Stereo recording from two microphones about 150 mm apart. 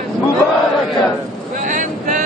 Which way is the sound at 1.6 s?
60° right (ahead or behind).